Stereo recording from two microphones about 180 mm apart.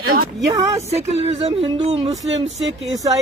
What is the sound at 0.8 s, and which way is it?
Speech, 35° right (ahead or behind).